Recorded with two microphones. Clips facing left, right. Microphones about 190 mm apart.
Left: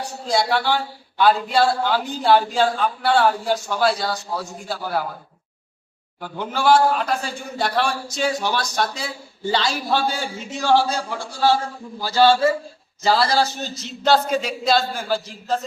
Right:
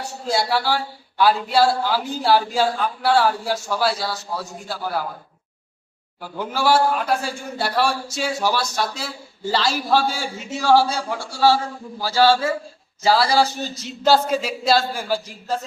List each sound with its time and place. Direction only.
0.3 s a man's voice: 5° right (ahead or behind)
6.4 s a man's voice: 5° right (ahead or behind)